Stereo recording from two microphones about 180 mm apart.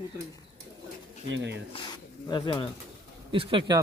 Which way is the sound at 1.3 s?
75° right (ahead or behind).